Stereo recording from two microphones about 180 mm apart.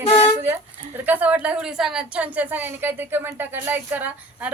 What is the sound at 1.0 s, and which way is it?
A woman's voice, 10° right (ahead or behind).